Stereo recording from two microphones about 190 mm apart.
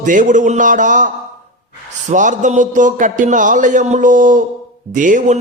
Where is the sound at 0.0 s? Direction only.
45° right (ahead or behind).